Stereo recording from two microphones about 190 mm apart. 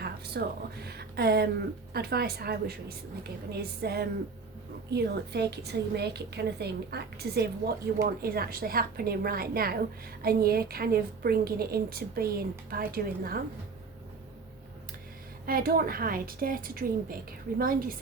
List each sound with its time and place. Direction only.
0.4 s a woman's voice: 60° right (ahead or behind)
0.9 s a sound: 55° right (ahead or behind)
1.9 s a woman's voice: 55° right (ahead or behind)
15.4 s a woman's voice: 50° right (ahead or behind)